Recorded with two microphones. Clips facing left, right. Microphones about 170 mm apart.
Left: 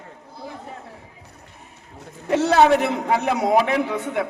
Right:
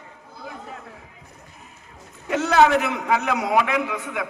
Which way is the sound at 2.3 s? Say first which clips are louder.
Left 2 dB; 30° left (ahead or behind).